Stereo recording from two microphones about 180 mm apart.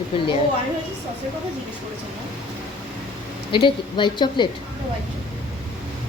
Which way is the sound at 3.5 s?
25° left (ahead or behind).